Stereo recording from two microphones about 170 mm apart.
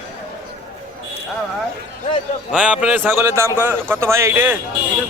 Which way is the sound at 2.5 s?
5° right (ahead or behind).